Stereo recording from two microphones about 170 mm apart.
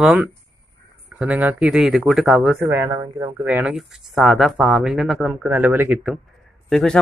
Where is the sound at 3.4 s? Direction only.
5° right (ahead or behind).